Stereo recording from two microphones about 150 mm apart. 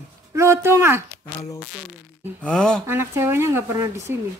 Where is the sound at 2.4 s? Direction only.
5° left (ahead or behind).